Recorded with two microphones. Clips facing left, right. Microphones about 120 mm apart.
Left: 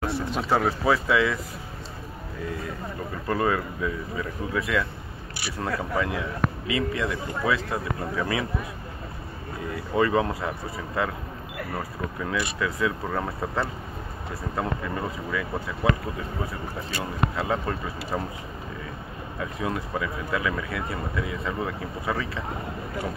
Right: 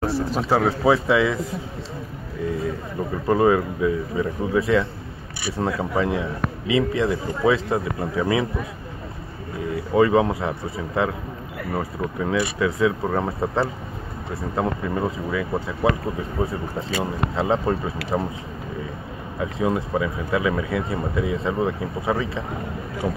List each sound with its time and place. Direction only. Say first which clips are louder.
0.0 s speech: right 5 dB; 35° right (ahead or behind)
0.6 s speech: right 5 dB; 20° right (ahead or behind)
3.3 s speech: right 7 dB; 20° right (ahead or behind)
9.9 s speech: right 5 dB; 15° right (ahead or behind)
12.3 s speech: right 6 dB; 20° right (ahead or behind)
19.6 s speech: right 7 dB; 20° right (ahead or behind)